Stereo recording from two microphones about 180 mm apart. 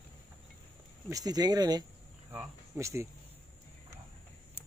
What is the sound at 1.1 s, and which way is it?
Speech, 20° right (ahead or behind).